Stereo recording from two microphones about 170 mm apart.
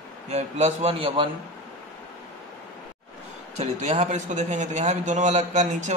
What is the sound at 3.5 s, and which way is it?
A man's voice, 40° right (ahead or behind).